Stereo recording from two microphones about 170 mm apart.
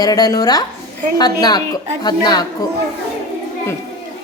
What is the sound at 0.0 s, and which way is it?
A woman's voice, 20° left (ahead or behind).